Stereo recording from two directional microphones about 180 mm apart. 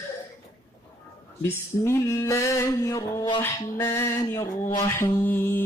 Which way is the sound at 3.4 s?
15° left (ahead or behind).